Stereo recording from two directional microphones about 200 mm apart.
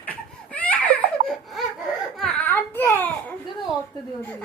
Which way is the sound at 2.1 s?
5° left (ahead or behind).